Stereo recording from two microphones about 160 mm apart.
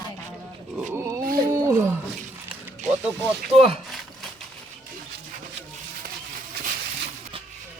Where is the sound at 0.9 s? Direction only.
20° right (ahead or behind).